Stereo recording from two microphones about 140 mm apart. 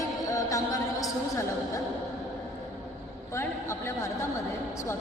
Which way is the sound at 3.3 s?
20° left (ahead or behind).